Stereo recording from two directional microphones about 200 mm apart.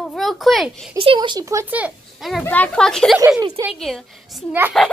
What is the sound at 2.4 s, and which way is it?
Speech, 10° left (ahead or behind).